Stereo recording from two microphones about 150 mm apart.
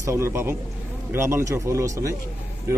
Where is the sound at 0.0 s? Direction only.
20° right (ahead or behind).